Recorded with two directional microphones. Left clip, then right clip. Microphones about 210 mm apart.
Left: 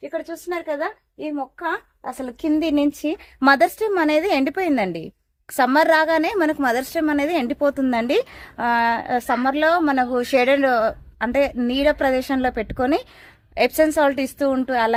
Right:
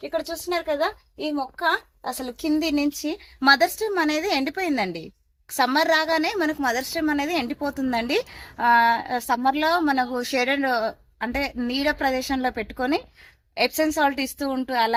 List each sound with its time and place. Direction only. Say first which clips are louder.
0.1 s a woman's voice: right 2 dB; 35° left (ahead or behind); by 14.9 s 55° left (ahead or behind)